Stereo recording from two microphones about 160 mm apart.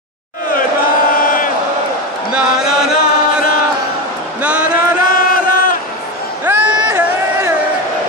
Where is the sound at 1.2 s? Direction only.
60° left (ahead or behind).